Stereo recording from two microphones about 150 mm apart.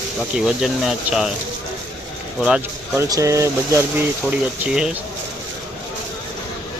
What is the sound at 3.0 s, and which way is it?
Speech, 20° right (ahead or behind).